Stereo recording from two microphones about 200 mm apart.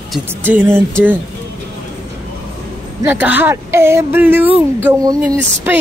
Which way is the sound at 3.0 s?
10° right (ahead or behind).